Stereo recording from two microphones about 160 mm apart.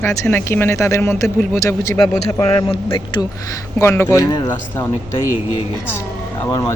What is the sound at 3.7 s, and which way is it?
Speech, 15° left (ahead or behind).